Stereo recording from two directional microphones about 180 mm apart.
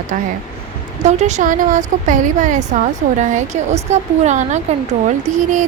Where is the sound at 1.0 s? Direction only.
40° right (ahead or behind).